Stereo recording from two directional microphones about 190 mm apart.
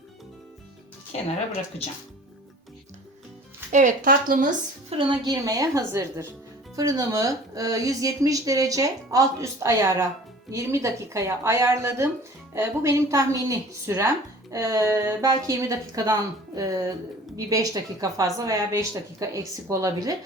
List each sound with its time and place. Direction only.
3.7 s speech: 40° right (ahead or behind)
4.9 s a woman's voice: 25° right (ahead or behind)